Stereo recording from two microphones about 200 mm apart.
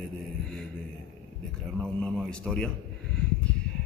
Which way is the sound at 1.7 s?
5° left (ahead or behind).